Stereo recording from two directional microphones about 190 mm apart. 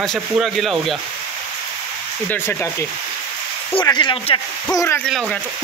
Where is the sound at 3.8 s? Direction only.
25° left (ahead or behind).